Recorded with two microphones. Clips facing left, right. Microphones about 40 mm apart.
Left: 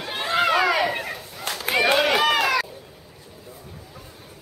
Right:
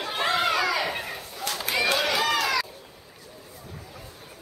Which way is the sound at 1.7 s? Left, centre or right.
Left.